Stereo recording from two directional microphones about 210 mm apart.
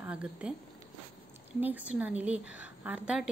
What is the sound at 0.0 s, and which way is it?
Speech, 5° right (ahead or behind).